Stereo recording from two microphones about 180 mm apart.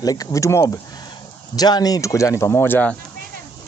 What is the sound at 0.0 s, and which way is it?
Speech, 20° left (ahead or behind).